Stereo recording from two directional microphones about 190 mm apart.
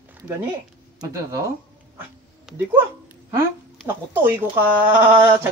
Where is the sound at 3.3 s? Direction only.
15° right (ahead or behind).